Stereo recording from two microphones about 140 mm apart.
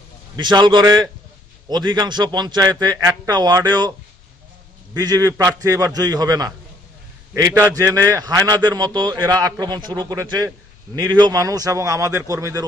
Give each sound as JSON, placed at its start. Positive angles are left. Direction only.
{"t": 0.4, "sound": "a man's voice", "side_deg": -35}
{"t": 4.9, "sound": "a man's voice", "side_deg": -25}